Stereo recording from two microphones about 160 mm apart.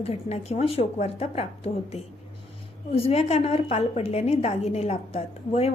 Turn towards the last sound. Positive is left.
turn(degrees=40)  # may be behind; listen again after turning